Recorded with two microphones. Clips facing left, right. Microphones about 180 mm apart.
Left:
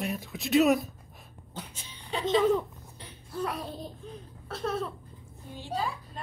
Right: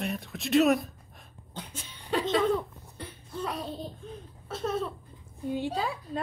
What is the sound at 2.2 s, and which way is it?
Speech, 10° left (ahead or behind).